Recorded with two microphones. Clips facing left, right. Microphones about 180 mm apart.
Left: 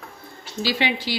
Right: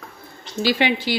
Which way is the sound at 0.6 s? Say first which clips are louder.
Right 4 dB; 55° right (ahead or behind).